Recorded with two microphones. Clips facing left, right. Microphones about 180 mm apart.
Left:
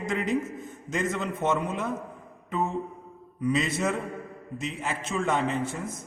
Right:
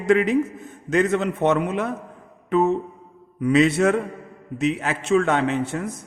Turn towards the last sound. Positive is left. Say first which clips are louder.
# right 5 dB
turn(degrees=-70)  # may be behind; listen again after turning